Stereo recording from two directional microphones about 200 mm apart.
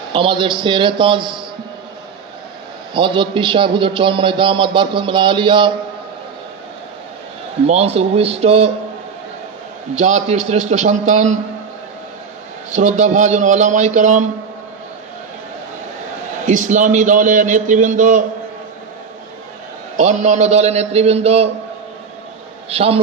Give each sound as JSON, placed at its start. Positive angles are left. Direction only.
{"t": 0.1, "sound": "a man's voice", "side_deg": -25}
{"t": 2.9, "sound": "a man's voice", "side_deg": -25}
{"t": 7.7, "sound": "a man's voice", "side_deg": -30}
{"t": 9.9, "sound": "a man's voice", "side_deg": -35}
{"t": 12.7, "sound": "a man's voice", "side_deg": -35}
{"t": 16.5, "sound": "a man's voice", "side_deg": -40}
{"t": 20.0, "sound": "a man's voice", "side_deg": -35}
{"t": 22.7, "sound": "a man's voice", "side_deg": -30}